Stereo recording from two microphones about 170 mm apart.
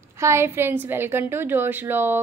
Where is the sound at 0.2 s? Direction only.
15° right (ahead or behind).